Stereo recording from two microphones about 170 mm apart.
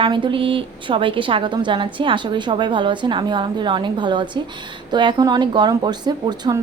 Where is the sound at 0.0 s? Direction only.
30° right (ahead or behind).